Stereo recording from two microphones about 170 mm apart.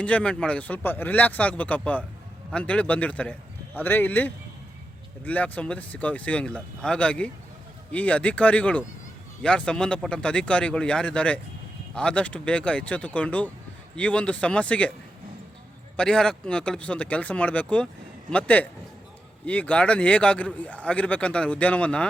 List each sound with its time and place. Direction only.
0.0 s a man's voice: 5° left (ahead or behind)
16.0 s a man's voice: 5° left (ahead or behind)